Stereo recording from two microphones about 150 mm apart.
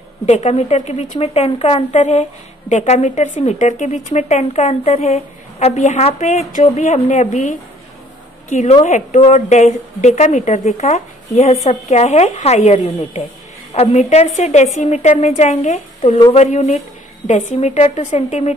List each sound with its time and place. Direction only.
0.3 s a woman's voice: 45° left (ahead or behind)